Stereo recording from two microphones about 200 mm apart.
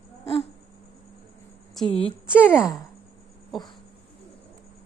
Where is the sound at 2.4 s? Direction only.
10° left (ahead or behind).